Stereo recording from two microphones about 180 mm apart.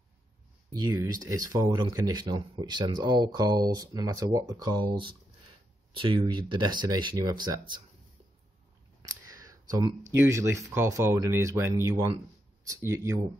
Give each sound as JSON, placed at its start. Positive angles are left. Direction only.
{"t": 0.7, "sound": "speech", "side_deg": -25}
{"t": 5.9, "sound": "speech", "side_deg": -30}
{"t": 9.0, "sound": "a sound", "side_deg": -20}
{"t": 10.1, "sound": "speech", "side_deg": -15}